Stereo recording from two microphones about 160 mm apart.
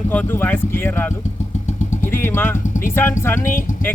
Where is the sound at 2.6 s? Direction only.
55° left (ahead or behind).